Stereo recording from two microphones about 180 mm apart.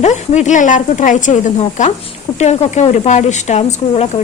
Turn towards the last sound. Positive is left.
turn(degrees=35)  # may be behind; listen again after turning